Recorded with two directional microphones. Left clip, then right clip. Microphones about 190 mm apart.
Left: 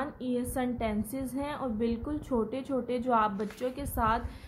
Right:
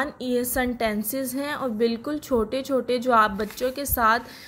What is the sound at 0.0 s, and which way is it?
A woman's voice, 30° right (ahead or behind).